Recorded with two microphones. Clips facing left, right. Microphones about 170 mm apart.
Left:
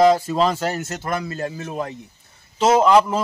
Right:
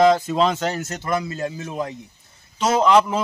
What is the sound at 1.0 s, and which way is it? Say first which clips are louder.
Speech: right 2 dB; 55° left (ahead or behind).